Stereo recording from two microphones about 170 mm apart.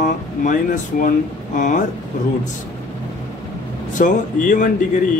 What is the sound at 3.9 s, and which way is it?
Speech, 50° left (ahead or behind).